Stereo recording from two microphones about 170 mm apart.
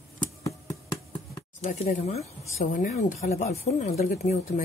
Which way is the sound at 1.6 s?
45° left (ahead or behind).